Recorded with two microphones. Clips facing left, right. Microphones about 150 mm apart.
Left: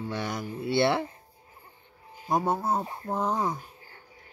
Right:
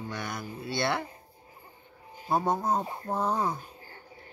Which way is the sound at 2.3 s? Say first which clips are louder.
Left 1 dB; 10° left (ahead or behind).